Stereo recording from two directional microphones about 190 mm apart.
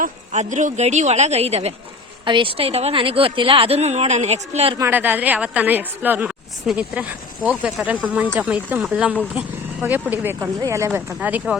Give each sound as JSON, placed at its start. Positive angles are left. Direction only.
{"t": 0.0, "sound": "a woman's voice", "side_deg": -40}
{"t": 4.8, "sound": "a woman's voice", "side_deg": -10}